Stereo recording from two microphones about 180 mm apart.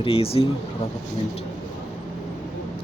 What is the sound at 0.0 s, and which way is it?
Speech, 30° left (ahead or behind).